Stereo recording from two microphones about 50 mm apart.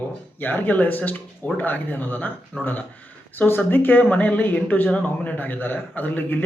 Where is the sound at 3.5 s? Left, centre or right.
Left.